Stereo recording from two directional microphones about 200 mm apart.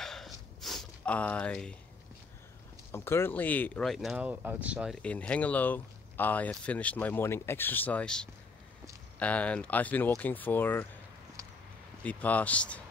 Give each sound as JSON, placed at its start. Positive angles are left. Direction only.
{"t": 0.0, "sound": "a sound", "side_deg": 0}
{"t": 2.9, "sound": "speech", "side_deg": 15}
{"t": 12.0, "sound": "speech", "side_deg": 5}